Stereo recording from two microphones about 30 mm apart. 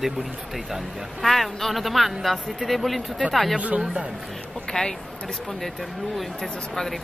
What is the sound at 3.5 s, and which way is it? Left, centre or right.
Speech, right.